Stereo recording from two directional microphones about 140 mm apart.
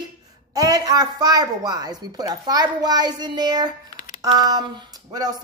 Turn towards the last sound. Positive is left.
turn(degrees=-30)  # may be behind; listen again after turning